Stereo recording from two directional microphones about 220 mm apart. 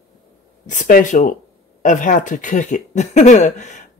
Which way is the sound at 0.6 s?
35° left (ahead or behind).